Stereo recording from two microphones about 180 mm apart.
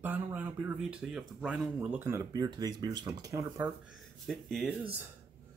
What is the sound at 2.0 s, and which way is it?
Speech, 15° right (ahead or behind).